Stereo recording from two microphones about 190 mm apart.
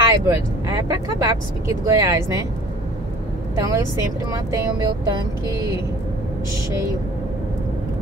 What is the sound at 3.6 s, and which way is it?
Speech, 15° right (ahead or behind).